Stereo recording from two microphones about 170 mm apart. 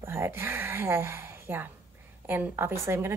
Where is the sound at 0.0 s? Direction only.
15° right (ahead or behind).